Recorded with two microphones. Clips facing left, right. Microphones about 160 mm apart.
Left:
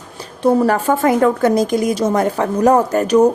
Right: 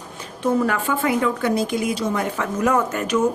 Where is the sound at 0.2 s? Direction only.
35° left (ahead or behind).